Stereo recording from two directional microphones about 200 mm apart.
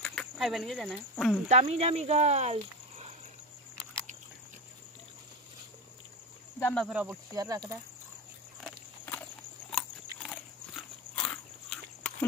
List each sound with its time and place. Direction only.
0.0 s speech: 5° left (ahead or behind)
1.5 s speech: 35° right (ahead or behind)
6.6 s speech: 5° left (ahead or behind)
7.3 s speech: 15° right (ahead or behind)
9.7 s biting: centre (ahead or behind)